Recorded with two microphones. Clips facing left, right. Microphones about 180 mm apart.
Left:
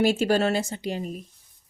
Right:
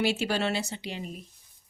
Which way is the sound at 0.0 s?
45° left (ahead or behind).